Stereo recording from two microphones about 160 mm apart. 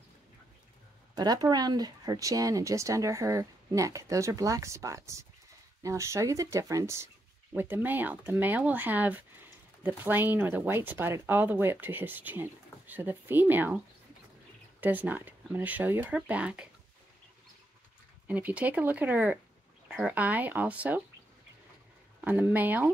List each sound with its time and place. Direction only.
1.1 s speech: 25° right (ahead or behind); by 16.6 s 10° right (ahead or behind)
18.2 s speech: 10° right (ahead or behind)
22.2 s speech: 10° right (ahead or behind)